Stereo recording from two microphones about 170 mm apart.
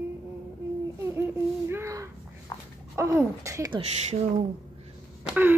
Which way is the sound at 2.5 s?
20° left (ahead or behind).